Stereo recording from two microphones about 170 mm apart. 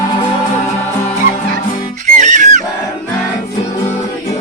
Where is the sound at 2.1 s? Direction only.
45° right (ahead or behind).